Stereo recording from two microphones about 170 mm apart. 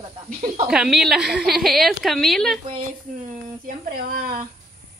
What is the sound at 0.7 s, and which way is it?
A woman's voice, 5° right (ahead or behind).